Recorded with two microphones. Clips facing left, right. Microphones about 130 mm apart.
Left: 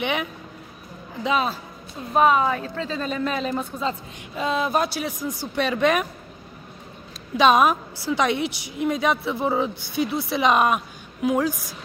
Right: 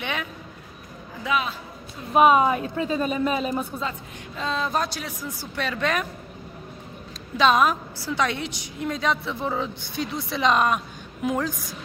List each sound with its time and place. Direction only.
0.0 s a woman's voice: 15° left (ahead or behind)
1.2 s speech: 35° left (ahead or behind)
2.1 s a woman's voice: 20° right (ahead or behind)
4.4 s a woman's voice: 10° left (ahead or behind)
7.3 s a woman's voice: 15° left (ahead or behind)